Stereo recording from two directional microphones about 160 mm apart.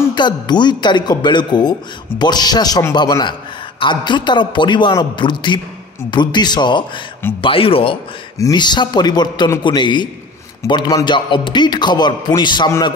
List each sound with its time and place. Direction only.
0.1 s a man's voice: 30° left (ahead or behind)
8.4 s a man's voice: 25° left (ahead or behind)